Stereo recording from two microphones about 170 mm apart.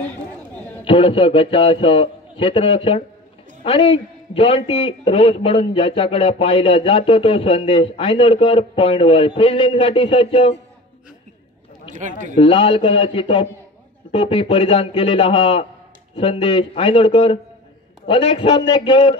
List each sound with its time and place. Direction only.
0.0 s a sound: 10° left (ahead or behind)
0.8 s a man's voice: 30° left (ahead or behind)
11.9 s speech: 45° right (ahead or behind)
12.4 s a man's voice: 35° left (ahead or behind)